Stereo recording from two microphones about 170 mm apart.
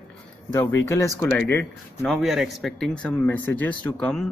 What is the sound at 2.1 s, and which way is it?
Speech, centre (ahead or behind).